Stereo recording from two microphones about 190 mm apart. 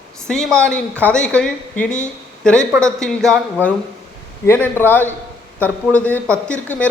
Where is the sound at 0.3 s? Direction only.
5° left (ahead or behind).